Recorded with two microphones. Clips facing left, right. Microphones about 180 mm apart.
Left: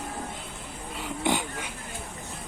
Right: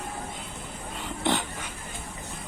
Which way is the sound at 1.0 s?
10° left (ahead or behind).